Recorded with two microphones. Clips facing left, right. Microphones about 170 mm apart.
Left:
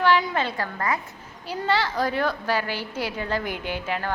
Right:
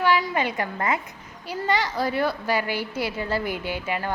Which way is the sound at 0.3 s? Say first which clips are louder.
Right 1 dB; 15° right (ahead or behind).